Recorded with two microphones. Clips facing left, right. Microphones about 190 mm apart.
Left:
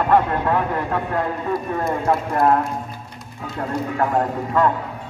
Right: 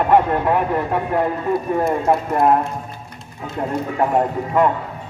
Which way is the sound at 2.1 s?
20° right (ahead or behind).